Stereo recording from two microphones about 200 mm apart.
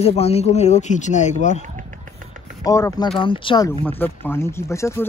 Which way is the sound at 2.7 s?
15° left (ahead or behind).